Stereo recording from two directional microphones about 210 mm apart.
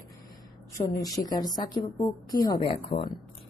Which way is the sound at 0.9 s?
15° left (ahead or behind).